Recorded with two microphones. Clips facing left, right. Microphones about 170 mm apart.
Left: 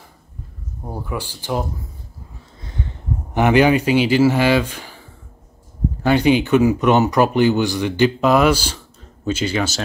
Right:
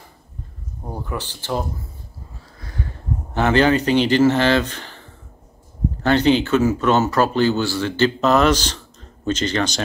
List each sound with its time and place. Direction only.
0.8 s speech: 10° left (ahead or behind)
2.6 s a sound: 20° left (ahead or behind)
3.3 s speech: 15° left (ahead or behind)